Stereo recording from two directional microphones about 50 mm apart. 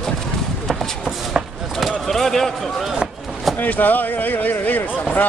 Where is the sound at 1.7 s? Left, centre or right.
Centre.